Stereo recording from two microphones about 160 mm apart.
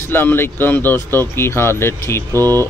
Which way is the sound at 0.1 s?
15° left (ahead or behind).